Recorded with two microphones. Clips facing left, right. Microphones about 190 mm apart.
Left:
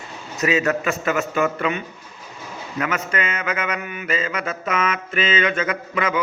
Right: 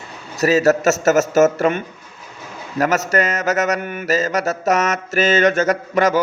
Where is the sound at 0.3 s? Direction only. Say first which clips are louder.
Right 6 dB; 40° right (ahead or behind).